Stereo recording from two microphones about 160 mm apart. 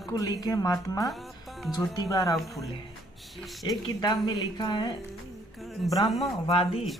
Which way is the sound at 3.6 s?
25° left (ahead or behind).